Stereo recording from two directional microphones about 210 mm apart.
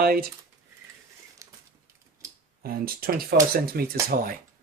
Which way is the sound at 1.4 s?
15° right (ahead or behind).